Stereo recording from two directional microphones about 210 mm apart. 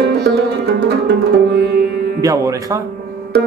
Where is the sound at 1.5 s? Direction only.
50° right (ahead or behind).